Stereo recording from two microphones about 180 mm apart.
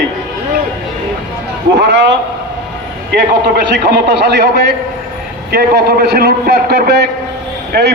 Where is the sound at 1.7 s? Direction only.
75° right (ahead or behind).